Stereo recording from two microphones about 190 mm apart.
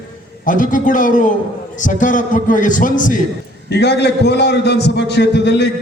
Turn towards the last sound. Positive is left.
turn(degrees=65)  # may be behind; listen again after turning